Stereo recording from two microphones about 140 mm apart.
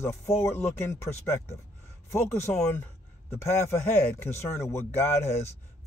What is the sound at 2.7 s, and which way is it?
Speech, 15° left (ahead or behind).